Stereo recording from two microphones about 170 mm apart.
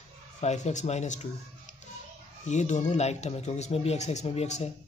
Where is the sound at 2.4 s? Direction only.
45° left (ahead or behind).